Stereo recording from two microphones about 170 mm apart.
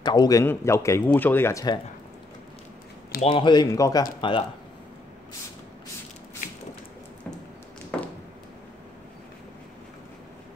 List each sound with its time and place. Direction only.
0.0 s speech: 25° left (ahead or behind)
3.2 s speech: 35° left (ahead or behind)